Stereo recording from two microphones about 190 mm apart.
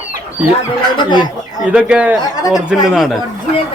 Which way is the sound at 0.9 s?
25° left (ahead or behind).